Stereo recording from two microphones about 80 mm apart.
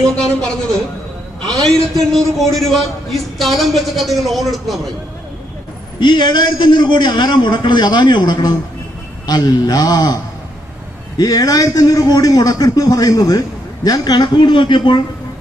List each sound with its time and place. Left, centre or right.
1.4 s a man's voice: centre
5.9 s a man's voice: left
11.1 s a man's voice: left